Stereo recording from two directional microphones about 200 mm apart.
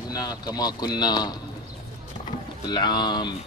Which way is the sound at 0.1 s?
20° left (ahead or behind).